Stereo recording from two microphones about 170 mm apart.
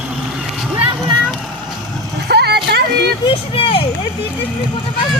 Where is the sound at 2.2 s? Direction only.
70° right (ahead or behind).